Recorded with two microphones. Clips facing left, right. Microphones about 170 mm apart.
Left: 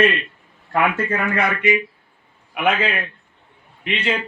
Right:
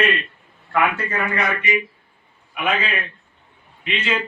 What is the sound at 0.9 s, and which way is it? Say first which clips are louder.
Speech: left 3 dB; 55° left (ahead or behind).